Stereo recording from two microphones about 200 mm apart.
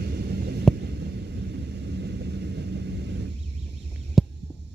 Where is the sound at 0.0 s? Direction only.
55° right (ahead or behind).